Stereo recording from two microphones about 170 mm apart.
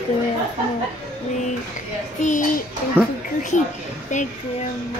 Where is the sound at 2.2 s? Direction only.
50° left (ahead or behind).